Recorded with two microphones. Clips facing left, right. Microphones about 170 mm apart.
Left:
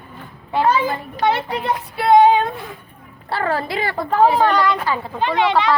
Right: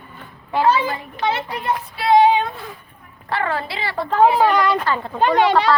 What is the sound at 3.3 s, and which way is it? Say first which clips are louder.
Speech: left 2 dB; 40° left (ahead or behind).